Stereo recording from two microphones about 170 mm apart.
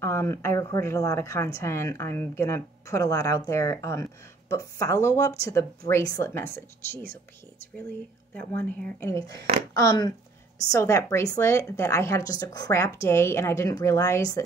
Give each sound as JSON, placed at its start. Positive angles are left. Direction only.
{"t": 0.0, "sound": "a woman's voice", "side_deg": 15}
{"t": 8.5, "sound": "a woman's voice", "side_deg": 10}
{"t": 9.0, "sound": "a woman's voice", "side_deg": 20}